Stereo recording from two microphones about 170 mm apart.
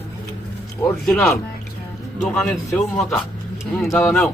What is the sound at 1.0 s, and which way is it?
Speech, 5° left (ahead or behind).